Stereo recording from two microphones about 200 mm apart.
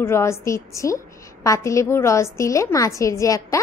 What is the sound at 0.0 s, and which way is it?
A woman's voice, 15° left (ahead or behind).